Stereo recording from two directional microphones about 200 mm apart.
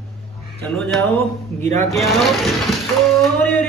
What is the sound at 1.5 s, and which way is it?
A man's voice, 5° left (ahead or behind).